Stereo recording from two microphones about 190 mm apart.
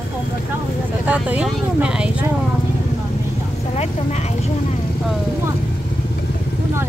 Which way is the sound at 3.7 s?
35° left (ahead or behind).